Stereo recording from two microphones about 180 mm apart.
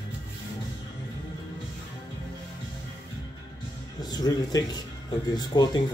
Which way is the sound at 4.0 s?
20° left (ahead or behind).